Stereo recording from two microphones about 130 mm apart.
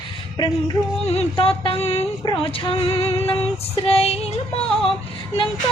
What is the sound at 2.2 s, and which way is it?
Female singing, 35° left (ahead or behind).